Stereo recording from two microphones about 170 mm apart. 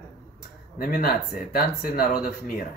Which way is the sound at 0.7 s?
60° left (ahead or behind).